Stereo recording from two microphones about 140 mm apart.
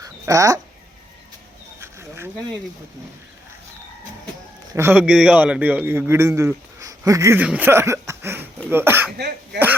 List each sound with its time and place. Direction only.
0.0 s bird: 25° right (ahead or behind)
1.8 s a sound: 20° right (ahead or behind)
4.7 s a man's voice: 15° right (ahead or behind)
7.3 s a man's voice: 10° right (ahead or behind)